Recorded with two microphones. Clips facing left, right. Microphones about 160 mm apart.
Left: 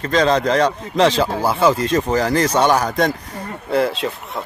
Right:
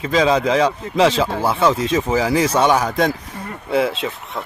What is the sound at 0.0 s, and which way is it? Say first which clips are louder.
Speech: even; 5° right (ahead or behind).